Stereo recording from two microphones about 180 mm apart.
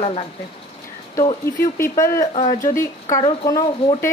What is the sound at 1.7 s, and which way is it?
Speech, 15° left (ahead or behind).